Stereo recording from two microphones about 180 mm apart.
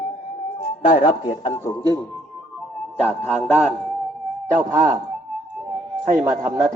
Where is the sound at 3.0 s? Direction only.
35° right (ahead or behind).